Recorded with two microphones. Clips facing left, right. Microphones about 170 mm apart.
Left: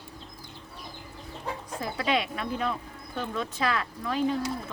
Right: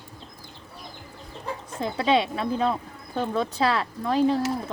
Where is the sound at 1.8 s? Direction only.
30° right (ahead or behind).